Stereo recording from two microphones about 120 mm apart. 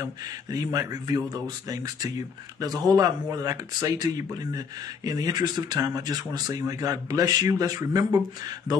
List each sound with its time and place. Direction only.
0.0 s speech: 30° right (ahead or behind)